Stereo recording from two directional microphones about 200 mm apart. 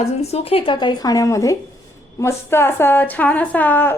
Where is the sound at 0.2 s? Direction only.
30° left (ahead or behind).